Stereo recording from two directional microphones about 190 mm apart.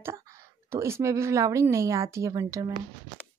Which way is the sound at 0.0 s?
15° right (ahead or behind).